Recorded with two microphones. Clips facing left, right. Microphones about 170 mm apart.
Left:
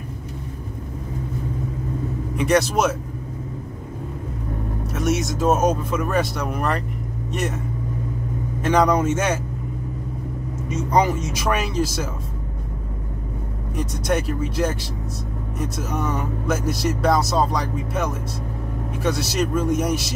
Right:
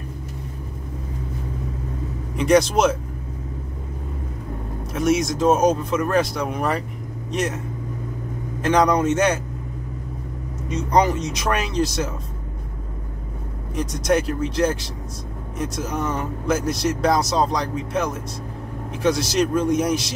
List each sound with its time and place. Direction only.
2.3 s speech: 5° left (ahead or behind)
4.9 s speech: centre (ahead or behind)
8.6 s speech: 5° left (ahead or behind)
10.7 s speech: 5° left (ahead or behind)
13.7 s speech: centre (ahead or behind)
19.0 s speech: 5° left (ahead or behind)